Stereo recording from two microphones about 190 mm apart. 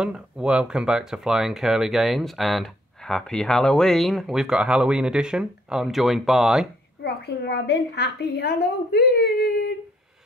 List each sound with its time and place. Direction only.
0.0 s speech: 5° right (ahead or behind)
7.0 s a woman's voice: 60° left (ahead or behind)